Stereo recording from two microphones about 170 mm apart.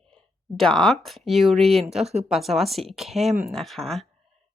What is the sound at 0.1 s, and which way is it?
Speech, 5° left (ahead or behind).